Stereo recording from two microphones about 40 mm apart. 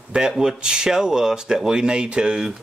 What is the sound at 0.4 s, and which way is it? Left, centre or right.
Speech, centre.